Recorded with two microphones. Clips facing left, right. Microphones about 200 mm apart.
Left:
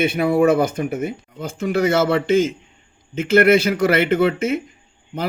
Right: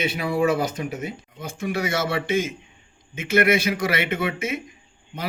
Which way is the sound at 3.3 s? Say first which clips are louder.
Left 6 dB; 55° left (ahead or behind).